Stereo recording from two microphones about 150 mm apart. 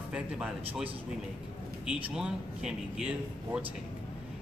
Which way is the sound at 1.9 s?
5° right (ahead or behind).